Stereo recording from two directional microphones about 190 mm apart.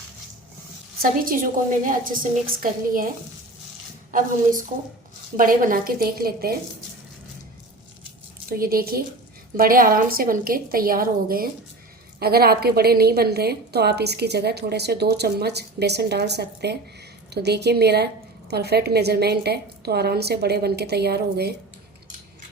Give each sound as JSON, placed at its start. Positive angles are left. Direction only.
{"t": 1.0, "sound": "a woman's voice", "side_deg": -45}
{"t": 5.4, "sound": "a woman's voice", "side_deg": -45}
{"t": 8.5, "sound": "a woman's voice", "side_deg": -50}